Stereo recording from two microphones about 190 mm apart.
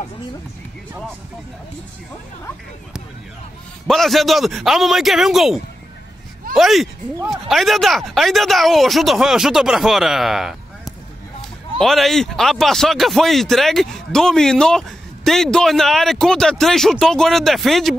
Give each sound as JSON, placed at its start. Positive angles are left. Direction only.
{"t": 3.8, "sound": "a man's voice", "side_deg": 0}
{"t": 11.8, "sound": "a man's voice", "side_deg": 0}